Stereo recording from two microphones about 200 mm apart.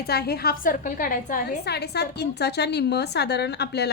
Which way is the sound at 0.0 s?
50° left (ahead or behind).